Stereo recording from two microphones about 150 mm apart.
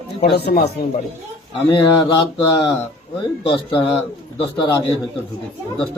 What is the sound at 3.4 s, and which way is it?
Speech, 35° left (ahead or behind).